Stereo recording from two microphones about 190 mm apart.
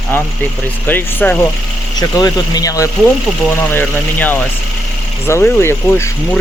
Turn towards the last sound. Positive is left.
turn(degrees=10)  # may be behind; listen again after turning